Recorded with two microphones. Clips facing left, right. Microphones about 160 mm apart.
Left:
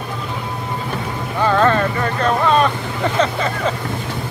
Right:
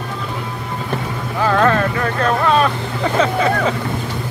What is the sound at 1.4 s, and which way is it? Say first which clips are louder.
Vehicle: even; centre (ahead or behind).